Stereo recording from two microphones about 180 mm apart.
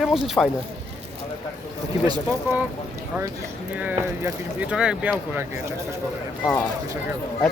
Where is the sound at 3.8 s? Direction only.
15° right (ahead or behind).